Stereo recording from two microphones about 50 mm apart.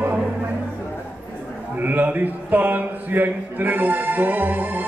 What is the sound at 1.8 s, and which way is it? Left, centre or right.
A man's voice, right.